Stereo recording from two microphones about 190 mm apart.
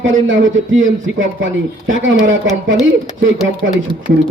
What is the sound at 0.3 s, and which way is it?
Speech, 90° right.